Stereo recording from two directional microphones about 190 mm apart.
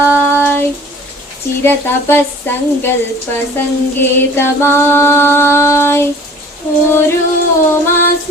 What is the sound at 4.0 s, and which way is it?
Music, 10° left (ahead or behind).